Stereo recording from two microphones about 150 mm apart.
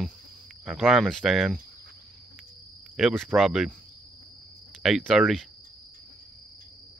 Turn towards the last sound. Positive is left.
turn(degrees=0)  # may be behind; listen again after turning